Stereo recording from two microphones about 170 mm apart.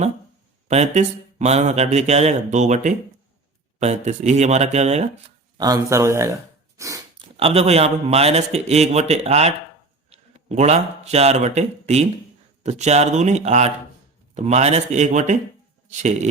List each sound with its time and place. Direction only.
0.7 s a man's voice: 40° right (ahead or behind)
5.5 s speech: 20° right (ahead or behind)
6.7 s a sound: 20° right (ahead or behind)
7.3 s a man's voice: 35° right (ahead or behind)